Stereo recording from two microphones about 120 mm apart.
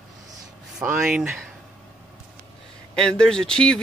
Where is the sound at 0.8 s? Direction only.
5° right (ahead or behind).